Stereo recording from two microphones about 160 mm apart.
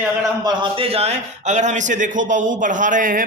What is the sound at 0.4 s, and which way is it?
A man's voice, 30° right (ahead or behind).